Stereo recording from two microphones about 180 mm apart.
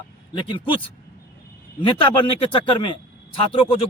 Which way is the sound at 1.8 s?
30° left (ahead or behind).